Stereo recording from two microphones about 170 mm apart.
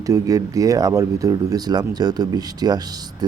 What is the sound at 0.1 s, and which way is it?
Speech, 20° right (ahead or behind).